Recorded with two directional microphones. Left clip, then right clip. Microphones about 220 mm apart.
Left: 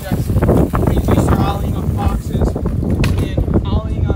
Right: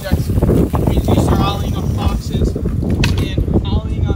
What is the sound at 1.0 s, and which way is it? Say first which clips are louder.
Vehicle: right 1 dB; 25° right (ahead or behind).